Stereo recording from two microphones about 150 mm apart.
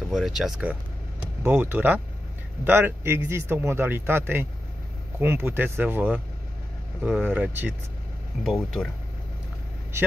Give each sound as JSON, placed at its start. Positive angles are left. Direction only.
{"t": 0.1, "sound": "speech", "side_deg": 0}